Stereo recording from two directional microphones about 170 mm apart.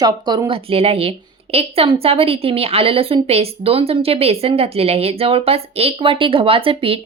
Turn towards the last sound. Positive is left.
turn(degrees=-35)  # may be behind; listen again after turning